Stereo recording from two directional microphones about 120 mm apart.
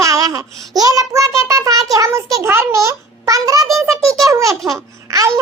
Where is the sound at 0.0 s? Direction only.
30° right (ahead or behind).